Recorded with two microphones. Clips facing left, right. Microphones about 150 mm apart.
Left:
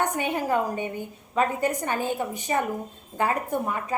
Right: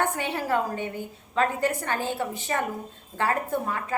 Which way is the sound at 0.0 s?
15° left (ahead or behind).